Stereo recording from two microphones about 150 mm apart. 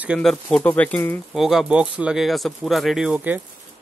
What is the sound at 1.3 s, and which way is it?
Speech, centre (ahead or behind).